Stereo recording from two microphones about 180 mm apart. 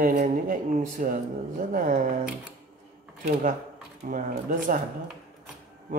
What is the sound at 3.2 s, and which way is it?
Speech, 50° right (ahead or behind).